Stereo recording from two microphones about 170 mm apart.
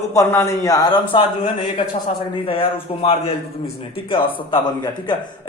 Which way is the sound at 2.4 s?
30° left (ahead or behind).